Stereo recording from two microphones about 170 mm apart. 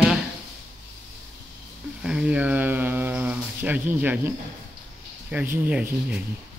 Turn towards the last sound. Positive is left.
turn(degrees=-10)  # may be behind; listen again after turning